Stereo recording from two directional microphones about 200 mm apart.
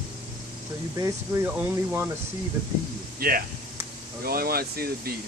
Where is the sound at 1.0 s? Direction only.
15° right (ahead or behind).